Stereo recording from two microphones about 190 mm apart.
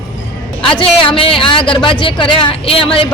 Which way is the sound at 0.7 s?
25° left (ahead or behind).